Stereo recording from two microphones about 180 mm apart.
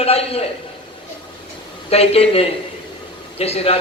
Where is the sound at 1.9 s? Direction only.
35° left (ahead or behind).